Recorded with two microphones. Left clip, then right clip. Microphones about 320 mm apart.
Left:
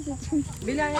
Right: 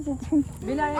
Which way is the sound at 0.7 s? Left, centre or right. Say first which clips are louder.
Left 1 dB; centre.